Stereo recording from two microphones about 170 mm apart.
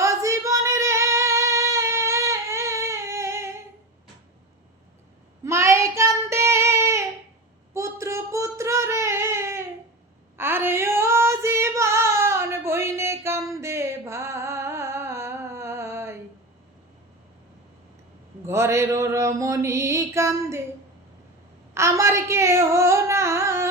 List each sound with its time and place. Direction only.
0.0 s singing: 15° right (ahead or behind)
5.5 s child singing: 15° right (ahead or behind)
7.7 s a sound: 15° right (ahead or behind)
10.3 s female singing: 15° right (ahead or behind)
18.4 s mantra: 15° right (ahead or behind)
21.8 s singing: 15° right (ahead or behind)